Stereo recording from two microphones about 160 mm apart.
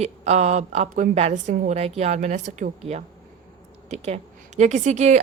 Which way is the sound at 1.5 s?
55° right (ahead or behind).